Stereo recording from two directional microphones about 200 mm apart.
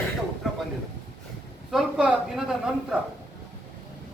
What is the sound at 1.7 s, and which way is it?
A man's voice, 5° right (ahead or behind).